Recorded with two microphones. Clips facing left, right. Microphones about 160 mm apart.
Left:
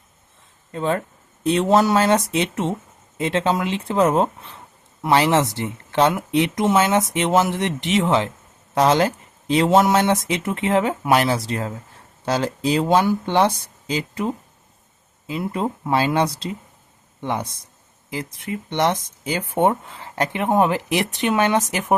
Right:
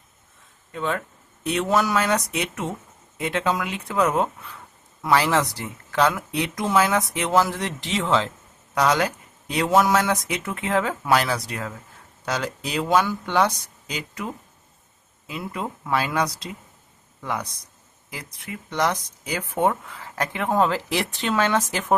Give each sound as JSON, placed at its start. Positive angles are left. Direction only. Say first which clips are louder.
{"t": 0.7, "sound": "speech", "louder": "left 4 dB", "side_deg": 35}